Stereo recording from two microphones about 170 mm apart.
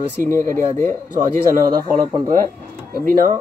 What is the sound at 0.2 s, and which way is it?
Speech, 50° right (ahead or behind).